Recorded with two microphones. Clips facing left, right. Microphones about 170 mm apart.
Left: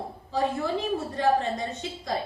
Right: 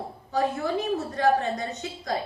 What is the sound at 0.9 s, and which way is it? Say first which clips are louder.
A woman's voice: right 1 dB; 25° left (ahead or behind).